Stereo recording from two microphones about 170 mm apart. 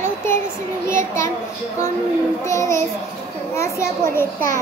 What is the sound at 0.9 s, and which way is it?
Speech, 15° left (ahead or behind).